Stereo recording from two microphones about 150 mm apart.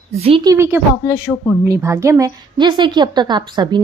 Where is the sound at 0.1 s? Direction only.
40° right (ahead or behind).